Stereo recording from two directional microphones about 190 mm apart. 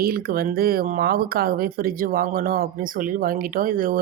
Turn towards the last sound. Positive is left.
turn(degrees=-45)  # may be behind; listen again after turning